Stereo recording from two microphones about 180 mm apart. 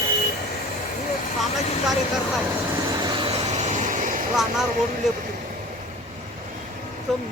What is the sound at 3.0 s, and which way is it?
Vehicle, 25° right (ahead or behind).